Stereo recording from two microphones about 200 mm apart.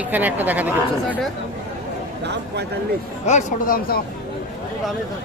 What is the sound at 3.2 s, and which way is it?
Speech, 35° left (ahead or behind).